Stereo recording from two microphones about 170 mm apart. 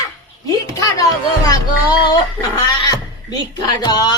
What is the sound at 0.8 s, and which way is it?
Speech, 20° left (ahead or behind).